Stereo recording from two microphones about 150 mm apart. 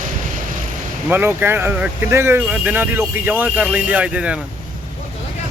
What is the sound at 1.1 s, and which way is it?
Speech, 15° right (ahead or behind).